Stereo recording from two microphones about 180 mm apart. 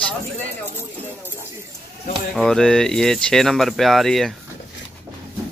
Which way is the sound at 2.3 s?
5° left (ahead or behind).